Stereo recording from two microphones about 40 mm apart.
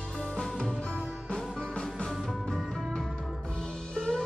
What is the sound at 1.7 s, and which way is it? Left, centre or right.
Music, centre.